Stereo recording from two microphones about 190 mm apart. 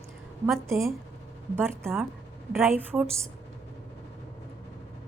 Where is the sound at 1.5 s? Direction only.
10° right (ahead or behind).